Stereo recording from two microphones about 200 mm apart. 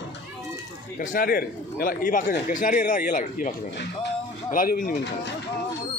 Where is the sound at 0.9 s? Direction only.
45° left (ahead or behind).